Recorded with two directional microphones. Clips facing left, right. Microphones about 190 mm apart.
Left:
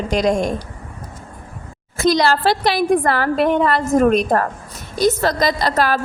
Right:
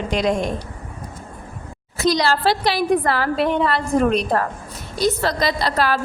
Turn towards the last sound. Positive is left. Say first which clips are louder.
# left 2 dB
turn(degrees=45)  # may be behind; listen again after turning